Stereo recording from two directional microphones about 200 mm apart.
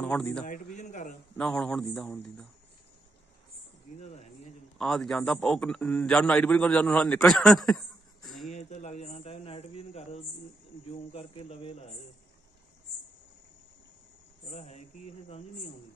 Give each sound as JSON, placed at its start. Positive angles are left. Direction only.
{"t": 0.0, "sound": "a man's voice", "side_deg": 5}
{"t": 0.5, "sound": "speech", "side_deg": 40}
{"t": 1.4, "sound": "a man's voice", "side_deg": 5}
{"t": 4.0, "sound": "a sound", "side_deg": 35}
{"t": 4.7, "sound": "a man's voice", "side_deg": 5}
{"t": 8.5, "sound": "speech", "side_deg": 35}
{"t": 14.5, "sound": "speech", "side_deg": 35}